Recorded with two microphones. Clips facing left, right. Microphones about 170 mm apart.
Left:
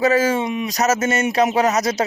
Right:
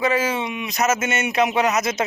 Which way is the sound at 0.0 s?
40° left (ahead or behind).